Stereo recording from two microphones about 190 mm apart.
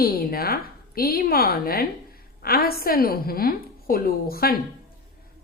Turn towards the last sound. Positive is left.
turn(degrees=50)  # may be behind; listen again after turning